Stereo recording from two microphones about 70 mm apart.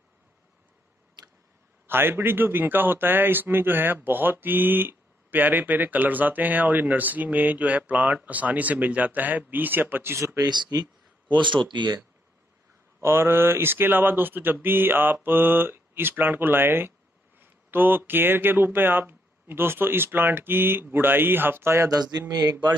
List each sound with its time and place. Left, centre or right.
1.9 s a man's voice: right
10.4 s speech: right
13.0 s speech: right
21.9 s speech: right